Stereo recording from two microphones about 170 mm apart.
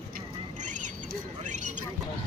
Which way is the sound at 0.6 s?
45° right (ahead or behind).